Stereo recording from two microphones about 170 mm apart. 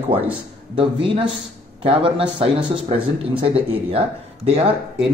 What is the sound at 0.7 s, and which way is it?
Speech, 30° right (ahead or behind).